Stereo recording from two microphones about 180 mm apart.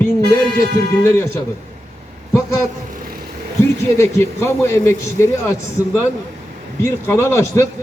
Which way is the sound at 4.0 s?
15° left (ahead or behind).